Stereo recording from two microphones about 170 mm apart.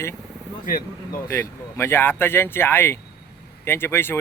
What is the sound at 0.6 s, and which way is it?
Speech, 55° left (ahead or behind).